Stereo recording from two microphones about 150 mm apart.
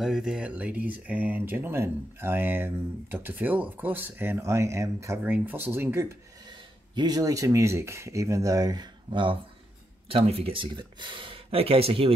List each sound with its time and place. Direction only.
0.0 s speech: 5° right (ahead or behind)
6.4 s speech: 30° right (ahead or behind)